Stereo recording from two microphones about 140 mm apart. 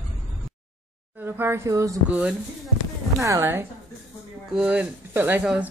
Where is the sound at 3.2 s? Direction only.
20° right (ahead or behind).